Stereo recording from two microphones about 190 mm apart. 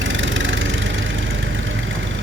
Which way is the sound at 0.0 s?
80° right.